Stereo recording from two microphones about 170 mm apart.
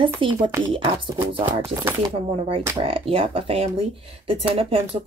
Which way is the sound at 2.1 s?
35° right (ahead or behind).